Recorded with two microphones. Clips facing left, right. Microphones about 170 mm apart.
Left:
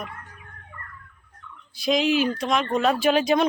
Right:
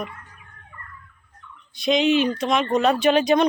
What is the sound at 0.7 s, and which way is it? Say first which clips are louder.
Fowl: even; 55° left (ahead or behind).